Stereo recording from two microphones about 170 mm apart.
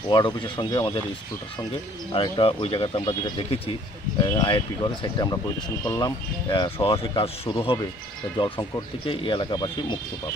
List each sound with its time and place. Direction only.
0.1 s speech: 25° left (ahead or behind)
2.1 s speech: 30° left (ahead or behind)
4.2 s speech: 25° left (ahead or behind)